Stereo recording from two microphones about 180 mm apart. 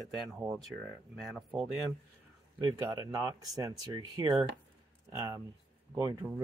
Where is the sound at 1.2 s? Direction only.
Centre (ahead or behind).